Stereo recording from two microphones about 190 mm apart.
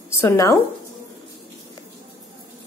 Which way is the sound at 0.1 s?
15° left (ahead or behind).